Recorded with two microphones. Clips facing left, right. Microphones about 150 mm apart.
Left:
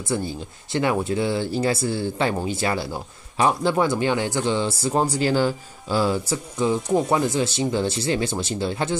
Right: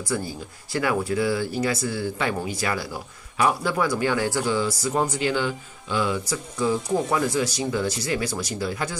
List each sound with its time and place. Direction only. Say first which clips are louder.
0.1 s speech: left 3 dB; 25° left (ahead or behind)